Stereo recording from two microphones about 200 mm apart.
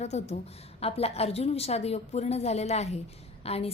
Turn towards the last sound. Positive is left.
turn(degrees=30)  # may be behind; listen again after turning